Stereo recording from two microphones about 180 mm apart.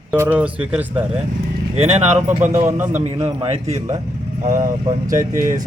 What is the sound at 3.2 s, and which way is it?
Speech, 35° right (ahead or behind).